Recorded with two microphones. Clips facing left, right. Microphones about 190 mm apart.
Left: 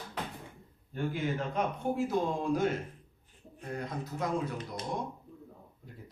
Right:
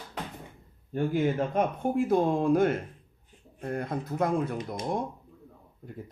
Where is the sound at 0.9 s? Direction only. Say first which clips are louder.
Right 7 dB; 50° right (ahead or behind).